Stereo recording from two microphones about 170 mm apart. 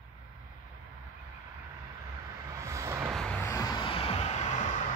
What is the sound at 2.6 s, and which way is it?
Vehicle, 15° right (ahead or behind).